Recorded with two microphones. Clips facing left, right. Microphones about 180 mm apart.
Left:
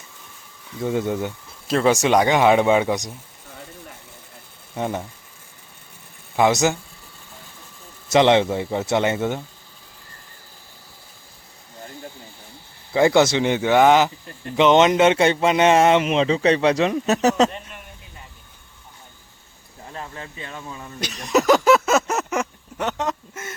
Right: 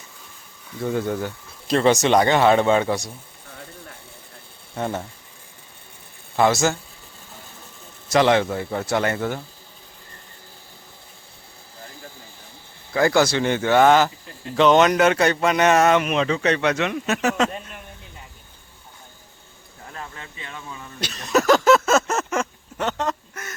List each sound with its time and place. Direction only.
0.9 s speech: 15° left (ahead or behind)
1.6 s speech: 5° left (ahead or behind)
4.7 s speech: 10° left (ahead or behind)
6.3 s speech: 15° left (ahead or behind)
8.0 s a man's voice: 20° left (ahead or behind)
12.9 s a man's voice: 25° left (ahead or behind)
19.9 s speech: 30° left (ahead or behind)
21.0 s a sound: 15° left (ahead or behind)